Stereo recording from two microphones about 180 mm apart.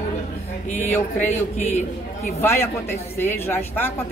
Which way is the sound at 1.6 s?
40° left (ahead or behind).